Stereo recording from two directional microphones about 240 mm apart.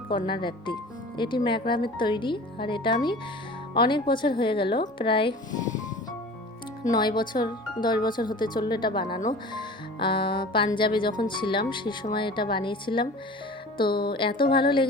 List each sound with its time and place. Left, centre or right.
0.3 s speech: centre
6.8 s speech: centre